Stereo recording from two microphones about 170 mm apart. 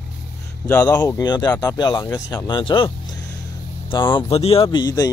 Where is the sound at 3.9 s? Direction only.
30° left (ahead or behind).